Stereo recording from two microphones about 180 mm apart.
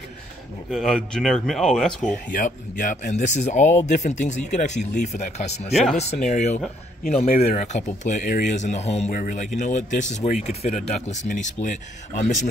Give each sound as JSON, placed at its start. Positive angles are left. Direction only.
{"t": 0.7, "sound": "speech", "side_deg": 0}
{"t": 2.3, "sound": "speech", "side_deg": 45}